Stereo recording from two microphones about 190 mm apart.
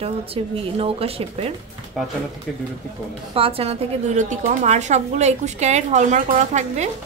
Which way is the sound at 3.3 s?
30° right (ahead or behind).